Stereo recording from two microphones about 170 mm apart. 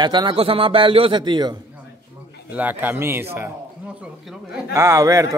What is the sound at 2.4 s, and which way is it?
Speech, 10° right (ahead or behind).